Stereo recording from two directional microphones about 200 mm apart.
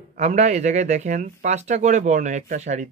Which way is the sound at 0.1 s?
35° right (ahead or behind).